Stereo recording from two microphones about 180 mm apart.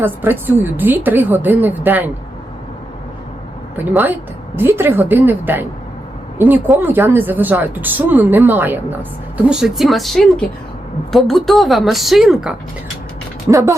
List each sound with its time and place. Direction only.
0.0 s speech: 10° right (ahead or behind)
3.9 s a woman's voice: 10° right (ahead or behind)
13.5 s speech: 15° right (ahead or behind)